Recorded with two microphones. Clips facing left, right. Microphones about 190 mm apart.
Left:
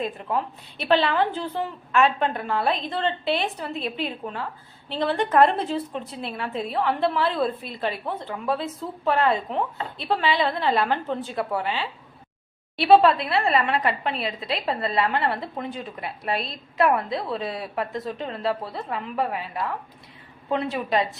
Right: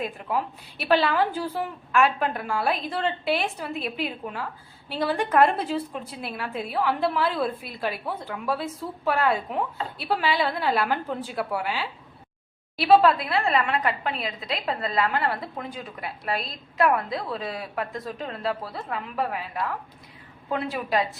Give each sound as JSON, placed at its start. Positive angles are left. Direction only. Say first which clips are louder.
{"t": 0.0, "sound": "a woman's voice", "louder": "left 1 dB", "side_deg": 0}
{"t": 14.1, "sound": "a woman's voice", "louder": "left 2 dB", "side_deg": 30}
{"t": 15.6, "sound": "a woman's voice", "louder": "left 3 dB", "side_deg": 0}
{"t": 16.2, "sound": "a woman's voice", "louder": "left 2 dB", "side_deg": 25}
{"t": 16.5, "sound": "a woman's voice", "louder": "left 1 dB", "side_deg": 0}